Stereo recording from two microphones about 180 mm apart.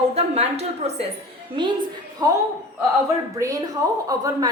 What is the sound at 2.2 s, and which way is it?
A woman's voice, 20° right (ahead or behind).